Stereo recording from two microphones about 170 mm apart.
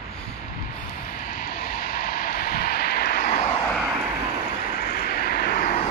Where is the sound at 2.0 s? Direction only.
60° left (ahead or behind).